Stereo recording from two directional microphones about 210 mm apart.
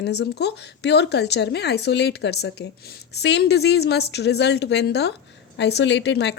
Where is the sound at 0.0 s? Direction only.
50° left (ahead or behind).